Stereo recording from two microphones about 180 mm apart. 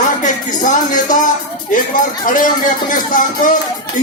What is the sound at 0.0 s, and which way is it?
Music, 45° left (ahead or behind).